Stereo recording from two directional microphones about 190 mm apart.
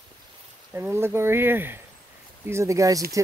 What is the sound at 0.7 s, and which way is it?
Speech, 15° right (ahead or behind).